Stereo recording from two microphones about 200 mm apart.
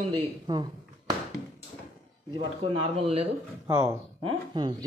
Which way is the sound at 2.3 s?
25° right (ahead or behind).